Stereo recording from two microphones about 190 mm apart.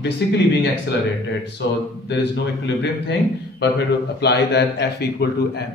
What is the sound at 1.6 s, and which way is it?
A man's voice, 70° left (ahead or behind).